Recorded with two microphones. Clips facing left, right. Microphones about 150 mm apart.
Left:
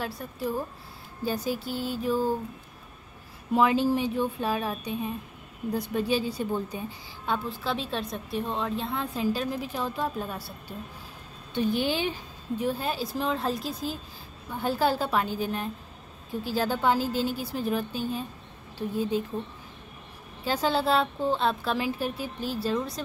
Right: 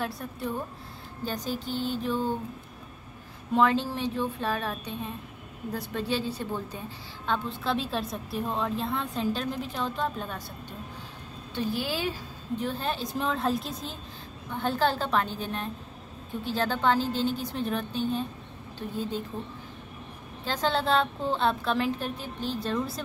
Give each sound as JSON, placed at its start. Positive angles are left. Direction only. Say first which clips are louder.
{"t": 0.0, "sound": "a woman's voice", "louder": "left 1 dB", "side_deg": 0}
{"t": 3.5, "sound": "a woman's voice", "louder": "left 2 dB", "side_deg": 10}
{"t": 11.5, "sound": "a woman's voice", "louder": "left 4 dB", "side_deg": 20}
{"t": 12.5, "sound": "a woman's voice", "louder": "left 2 dB", "side_deg": 10}
{"t": 20.4, "sound": "a woman's voice", "louder": "left 2 dB", "side_deg": 10}